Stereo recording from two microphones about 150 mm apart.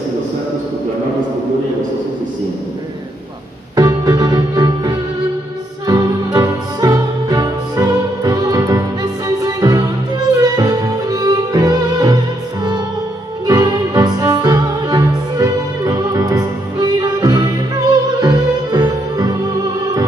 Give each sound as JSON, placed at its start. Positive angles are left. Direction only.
{"t": 3.7, "sound": "music", "side_deg": -25}
{"t": 13.5, "sound": "music", "side_deg": -25}